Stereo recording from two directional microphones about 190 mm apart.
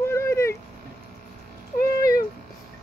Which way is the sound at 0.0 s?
15° left (ahead or behind).